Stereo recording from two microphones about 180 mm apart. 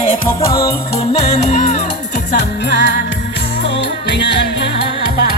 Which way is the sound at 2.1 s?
65° left (ahead or behind).